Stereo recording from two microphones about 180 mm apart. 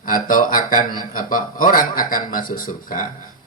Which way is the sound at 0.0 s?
50° left (ahead or behind).